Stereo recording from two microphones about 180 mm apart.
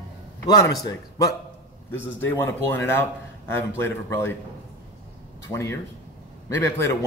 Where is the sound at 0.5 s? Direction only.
20° left (ahead or behind).